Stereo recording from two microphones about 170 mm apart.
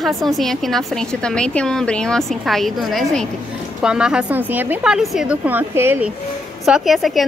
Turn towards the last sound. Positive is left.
turn(degrees=0)  # may be behind; listen again after turning